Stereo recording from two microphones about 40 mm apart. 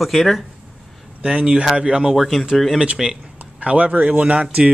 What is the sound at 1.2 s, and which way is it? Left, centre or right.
Speech, right.